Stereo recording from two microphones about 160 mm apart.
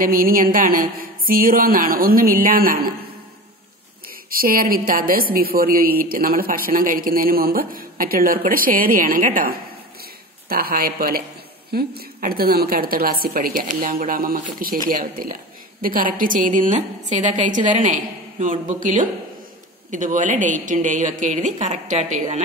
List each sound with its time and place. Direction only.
0.0 s a woman's voice: 60° right (ahead or behind)
4.1 s a woman's voice: 65° right (ahead or behind); by 22.2 s 45° right (ahead or behind)